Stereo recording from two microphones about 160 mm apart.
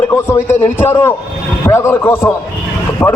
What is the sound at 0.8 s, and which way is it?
A man's voice, 15° left (ahead or behind).